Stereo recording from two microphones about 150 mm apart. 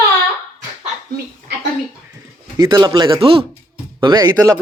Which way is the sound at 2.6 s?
30° right (ahead or behind).